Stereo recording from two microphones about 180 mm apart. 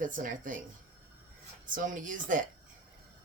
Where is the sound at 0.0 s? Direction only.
45° right (ahead or behind).